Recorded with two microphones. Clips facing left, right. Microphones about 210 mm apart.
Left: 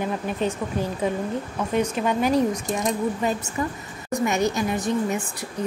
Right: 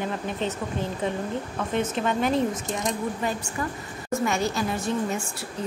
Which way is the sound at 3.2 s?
20° left (ahead or behind).